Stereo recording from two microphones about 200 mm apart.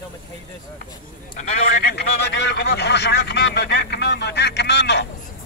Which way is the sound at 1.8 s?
55° left (ahead or behind).